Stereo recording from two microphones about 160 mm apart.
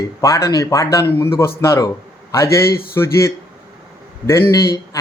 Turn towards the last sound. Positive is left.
turn(degrees=20)  # may be behind; listen again after turning